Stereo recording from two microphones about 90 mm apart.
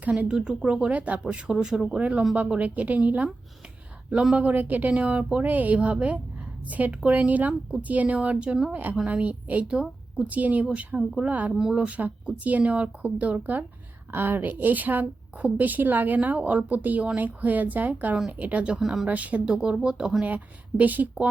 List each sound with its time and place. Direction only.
0.0 s speech: 15° right (ahead or behind)
11.5 s speech: 5° right (ahead or behind)
11.8 s a woman's voice: 15° right (ahead or behind)
19.0 s speech: 15° right (ahead or behind)
20.2 s speech: 20° right (ahead or behind)